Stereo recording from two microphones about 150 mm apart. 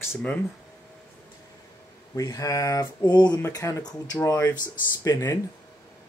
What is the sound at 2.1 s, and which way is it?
Speech, 25° left (ahead or behind).